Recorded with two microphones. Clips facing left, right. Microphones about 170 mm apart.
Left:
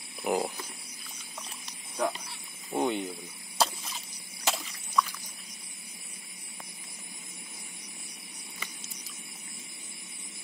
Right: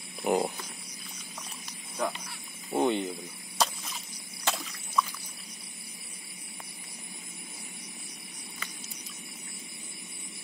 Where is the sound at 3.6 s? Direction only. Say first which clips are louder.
Left 1 dB; centre (ahead or behind).